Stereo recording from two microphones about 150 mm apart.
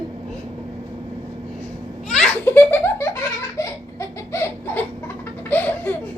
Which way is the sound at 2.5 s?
15° left (ahead or behind).